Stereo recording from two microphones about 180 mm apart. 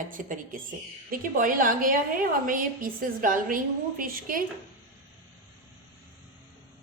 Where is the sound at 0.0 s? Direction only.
45° right (ahead or behind).